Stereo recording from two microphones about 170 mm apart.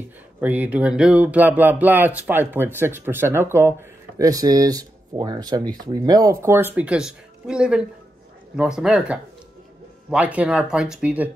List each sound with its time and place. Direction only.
0.4 s speech: 10° right (ahead or behind)